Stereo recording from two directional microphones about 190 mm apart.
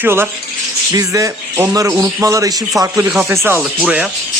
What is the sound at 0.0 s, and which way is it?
A man's voice, 10° right (ahead or behind).